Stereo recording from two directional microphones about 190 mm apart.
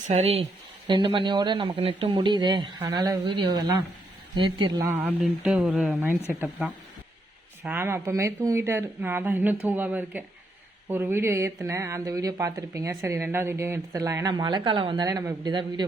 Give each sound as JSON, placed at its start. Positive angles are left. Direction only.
{"t": 0.1, "sound": "speech", "side_deg": -35}
{"t": 4.9, "sound": "speech", "side_deg": -10}
{"t": 7.6, "sound": "speech", "side_deg": -10}